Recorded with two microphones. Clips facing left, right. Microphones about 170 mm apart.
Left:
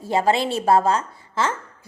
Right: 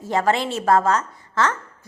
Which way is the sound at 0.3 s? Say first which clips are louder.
Left 2 dB; 15° left (ahead or behind).